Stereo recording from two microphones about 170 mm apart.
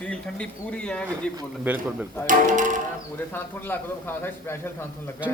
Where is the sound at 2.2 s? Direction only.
50° right (ahead or behind).